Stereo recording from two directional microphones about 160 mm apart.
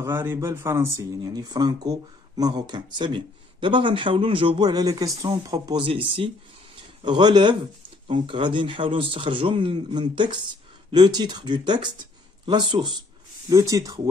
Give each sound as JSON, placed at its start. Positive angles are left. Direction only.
{"t": 0.0, "sound": "speech", "side_deg": -15}